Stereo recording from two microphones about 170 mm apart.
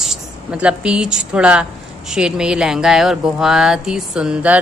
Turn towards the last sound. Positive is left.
turn(degrees=-5)  # may be behind; listen again after turning